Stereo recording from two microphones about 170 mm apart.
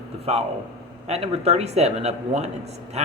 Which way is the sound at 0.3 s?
35° right (ahead or behind).